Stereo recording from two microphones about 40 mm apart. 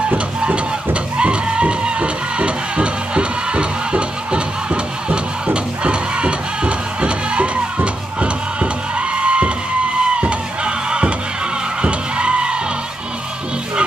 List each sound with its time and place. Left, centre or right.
1.1 s music: right
10.2 s a sound: right
11.8 s music: right